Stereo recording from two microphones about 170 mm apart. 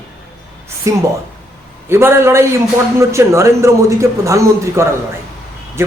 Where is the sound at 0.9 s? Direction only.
20° right (ahead or behind).